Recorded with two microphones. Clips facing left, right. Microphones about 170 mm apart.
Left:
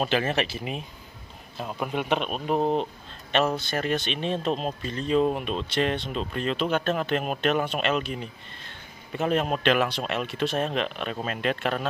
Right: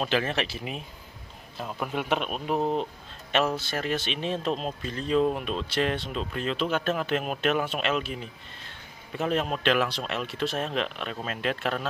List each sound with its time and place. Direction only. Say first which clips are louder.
0.0 s speech: left 2 dB; centre (ahead or behind)
2.6 s speech: left 3 dB; 25° left (ahead or behind)
3.5 s speech: left 2 dB; centre (ahead or behind)